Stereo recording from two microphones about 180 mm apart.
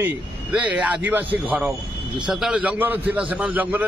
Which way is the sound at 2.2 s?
5° right (ahead or behind).